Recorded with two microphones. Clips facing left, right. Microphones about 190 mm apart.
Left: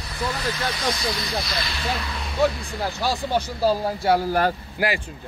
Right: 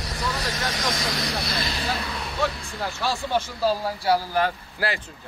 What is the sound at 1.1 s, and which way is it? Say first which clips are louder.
Speech: even; 80° right.